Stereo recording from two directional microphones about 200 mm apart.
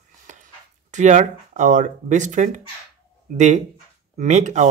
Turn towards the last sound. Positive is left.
turn(degrees=-35)  # may be behind; listen again after turning